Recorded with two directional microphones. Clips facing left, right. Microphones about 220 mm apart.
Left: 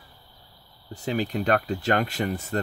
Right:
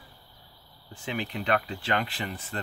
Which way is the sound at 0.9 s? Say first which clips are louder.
Left 6 dB; 40° left (ahead or behind).